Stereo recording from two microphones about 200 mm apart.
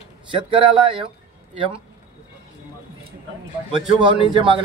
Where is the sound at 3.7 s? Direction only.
25° right (ahead or behind).